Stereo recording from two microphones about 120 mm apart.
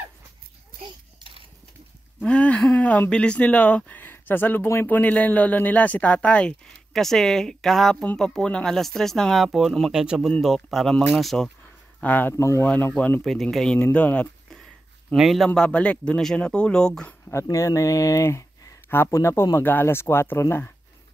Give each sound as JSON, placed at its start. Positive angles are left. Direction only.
{"t": 2.2, "sound": "speech", "side_deg": 10}
{"t": 12.0, "sound": "speech", "side_deg": 15}
{"t": 12.6, "sound": "speech", "side_deg": 15}
{"t": 13.2, "sound": "speech", "side_deg": 0}
{"t": 13.7, "sound": "speech", "side_deg": 15}
{"t": 15.1, "sound": "speech", "side_deg": 0}
{"t": 17.3, "sound": "speech", "side_deg": 25}